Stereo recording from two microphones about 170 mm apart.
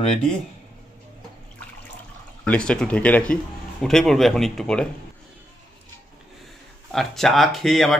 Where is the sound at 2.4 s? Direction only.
5° left (ahead or behind).